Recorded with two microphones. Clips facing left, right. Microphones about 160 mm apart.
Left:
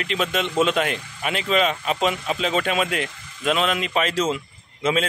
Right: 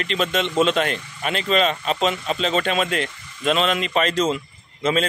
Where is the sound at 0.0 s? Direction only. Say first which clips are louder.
Right 2 dB; 5° left (ahead or behind).